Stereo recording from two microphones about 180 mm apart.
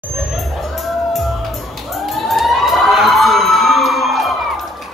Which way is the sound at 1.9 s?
Centre (ahead or behind).